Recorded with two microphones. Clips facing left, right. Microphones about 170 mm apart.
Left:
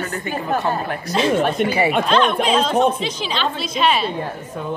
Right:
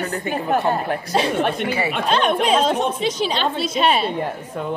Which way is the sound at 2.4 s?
50° right (ahead or behind).